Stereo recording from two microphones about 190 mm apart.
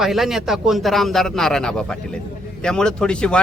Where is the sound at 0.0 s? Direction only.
Centre (ahead or behind).